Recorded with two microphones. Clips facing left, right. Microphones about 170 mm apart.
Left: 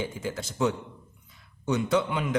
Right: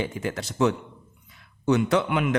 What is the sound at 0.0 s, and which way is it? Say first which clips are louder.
A man's voice: right 3 dB; 70° right (ahead or behind).